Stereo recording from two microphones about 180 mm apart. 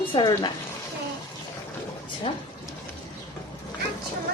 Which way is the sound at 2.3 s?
30° left (ahead or behind).